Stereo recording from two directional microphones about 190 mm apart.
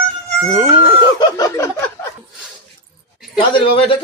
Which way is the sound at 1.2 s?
20° left (ahead or behind).